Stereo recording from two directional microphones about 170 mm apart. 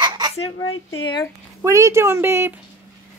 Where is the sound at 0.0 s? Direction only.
25° right (ahead or behind).